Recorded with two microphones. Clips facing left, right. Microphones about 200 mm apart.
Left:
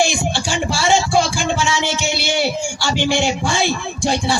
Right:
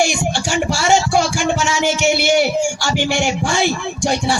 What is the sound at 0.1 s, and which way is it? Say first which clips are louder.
Music: right 2 dB; 45° right (ahead or behind).